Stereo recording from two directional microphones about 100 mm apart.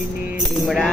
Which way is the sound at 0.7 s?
5° left (ahead or behind).